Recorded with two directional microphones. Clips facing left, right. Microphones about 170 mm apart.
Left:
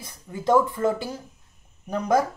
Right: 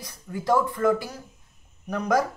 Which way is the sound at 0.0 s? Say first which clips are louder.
Left 3 dB; 20° left (ahead or behind).